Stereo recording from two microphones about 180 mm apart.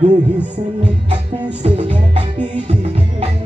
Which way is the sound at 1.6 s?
35° right (ahead or behind).